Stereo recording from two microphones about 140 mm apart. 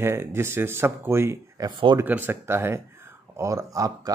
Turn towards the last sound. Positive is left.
turn(degrees=-25)  # may be behind; listen again after turning